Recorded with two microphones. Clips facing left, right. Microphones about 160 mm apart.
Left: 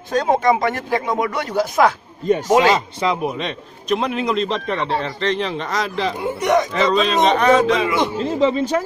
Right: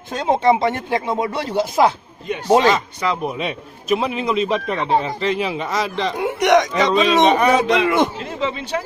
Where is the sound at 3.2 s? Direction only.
5° right (ahead or behind).